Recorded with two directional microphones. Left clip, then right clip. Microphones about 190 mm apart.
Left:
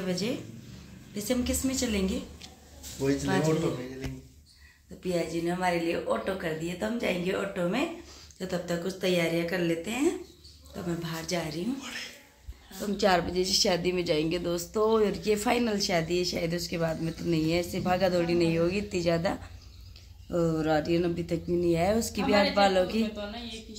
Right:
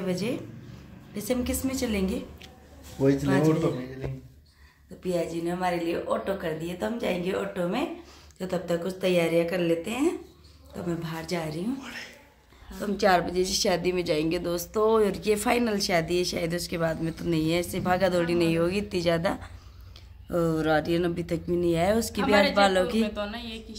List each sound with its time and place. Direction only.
0.0 s a woman's voice: 5° right (ahead or behind)
3.0 s speech: 55° right (ahead or behind)
5.0 s speech: 10° left (ahead or behind)
8.4 s a woman's voice: 5° right (ahead or behind)
12.8 s speech: centre (ahead or behind)
22.3 s speech: 20° right (ahead or behind)
22.6 s speech: 5° right (ahead or behind)
23.0 s speech: 20° right (ahead or behind)